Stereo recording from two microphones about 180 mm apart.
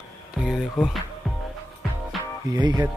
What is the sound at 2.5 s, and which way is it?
Music, 20° right (ahead or behind).